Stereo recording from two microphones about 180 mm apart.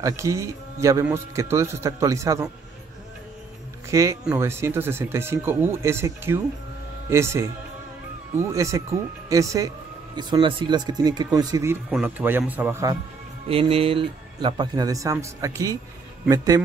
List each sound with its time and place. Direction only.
0.0 s speech: 15° right (ahead or behind)
3.9 s speech: 15° right (ahead or behind)
13.5 s speech: 30° right (ahead or behind)